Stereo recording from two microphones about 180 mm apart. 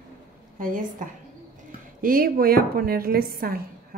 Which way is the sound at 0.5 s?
50° right (ahead or behind).